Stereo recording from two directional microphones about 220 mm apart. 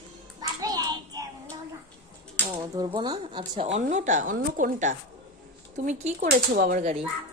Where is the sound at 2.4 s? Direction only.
20° right (ahead or behind); by 6.9 s 40° right (ahead or behind).